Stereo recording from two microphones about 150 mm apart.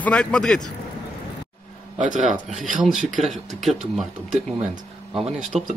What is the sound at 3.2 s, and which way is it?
Speech, centre (ahead or behind).